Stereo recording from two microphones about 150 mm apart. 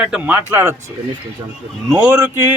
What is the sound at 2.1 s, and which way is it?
Speech, 15° right (ahead or behind).